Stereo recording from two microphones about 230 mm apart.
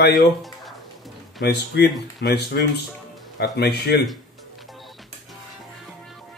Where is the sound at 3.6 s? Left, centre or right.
Left.